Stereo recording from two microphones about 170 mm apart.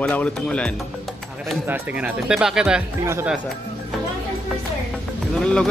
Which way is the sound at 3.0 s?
15° right (ahead or behind).